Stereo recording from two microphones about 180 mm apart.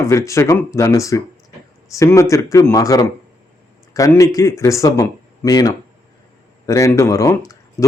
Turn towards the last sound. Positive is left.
turn(degrees=15)  # may be behind; listen again after turning